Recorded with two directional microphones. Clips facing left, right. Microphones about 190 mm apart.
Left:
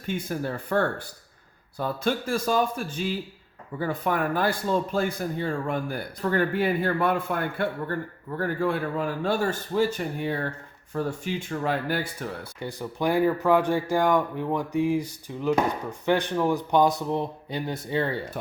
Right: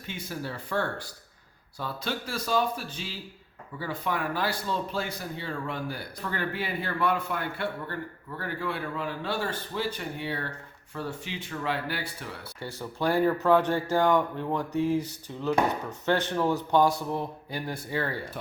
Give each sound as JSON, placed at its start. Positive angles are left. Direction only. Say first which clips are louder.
{"t": 0.0, "sound": "a man's voice", "louder": "left 7 dB", "side_deg": 50}
{"t": 12.5, "sound": "speech", "louder": "left 1 dB", "side_deg": 15}